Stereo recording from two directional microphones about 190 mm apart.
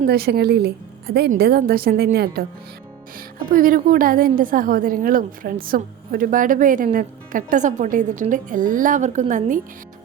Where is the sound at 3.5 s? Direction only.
50° right (ahead or behind).